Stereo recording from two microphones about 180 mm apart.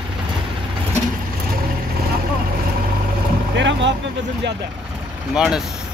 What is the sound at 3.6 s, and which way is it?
Vehicle, 80° right.